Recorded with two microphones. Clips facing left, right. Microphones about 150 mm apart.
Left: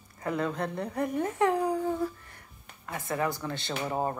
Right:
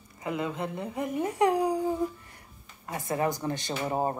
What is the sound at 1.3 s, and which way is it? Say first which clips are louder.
Speech: right 3 dB; 15° right (ahead or behind).